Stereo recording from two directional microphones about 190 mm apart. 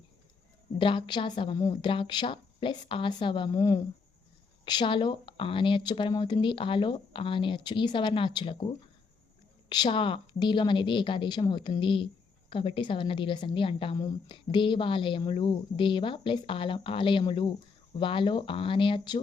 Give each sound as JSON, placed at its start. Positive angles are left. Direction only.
{"t": 0.8, "sound": "a woman's voice", "side_deg": 25}
{"t": 9.6, "sound": "a woman's voice", "side_deg": 20}